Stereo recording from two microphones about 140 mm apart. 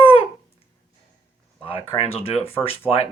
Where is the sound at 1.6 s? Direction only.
40° left (ahead or behind).